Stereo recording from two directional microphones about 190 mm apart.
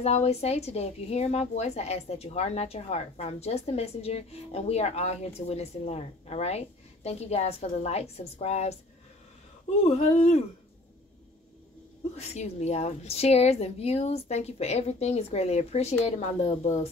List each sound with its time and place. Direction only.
0.0 s a woman's voice: 35° left (ahead or behind)
9.8 s a woman's voice: 35° left (ahead or behind)
12.2 s a woman's voice: 35° left (ahead or behind)